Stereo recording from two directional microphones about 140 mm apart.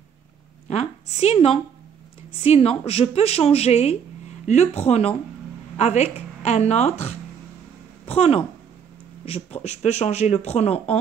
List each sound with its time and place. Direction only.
0.7 s a woman's voice: 50° left (ahead or behind)